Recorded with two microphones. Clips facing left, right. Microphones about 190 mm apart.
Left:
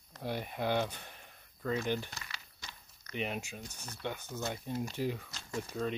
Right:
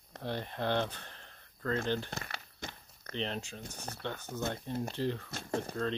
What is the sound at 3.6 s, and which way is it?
Speech, 50° right (ahead or behind).